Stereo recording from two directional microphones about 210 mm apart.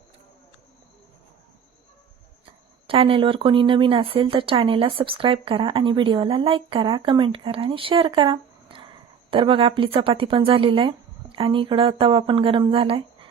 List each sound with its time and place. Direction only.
2.8 s speech: 25° right (ahead or behind)